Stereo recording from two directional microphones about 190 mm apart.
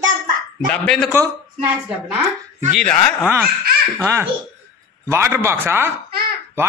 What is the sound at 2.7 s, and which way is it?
Speech, 5° left (ahead or behind).